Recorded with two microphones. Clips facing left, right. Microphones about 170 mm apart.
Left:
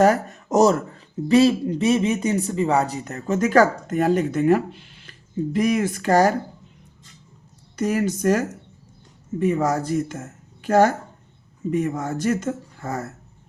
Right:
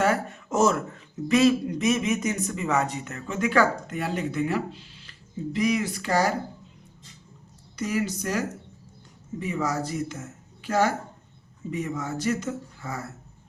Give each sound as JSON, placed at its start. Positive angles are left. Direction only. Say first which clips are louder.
{"t": 0.0, "sound": "speech", "louder": "left 7 dB", "side_deg": 40}
{"t": 7.8, "sound": "speech", "louder": "left 6 dB", "side_deg": 50}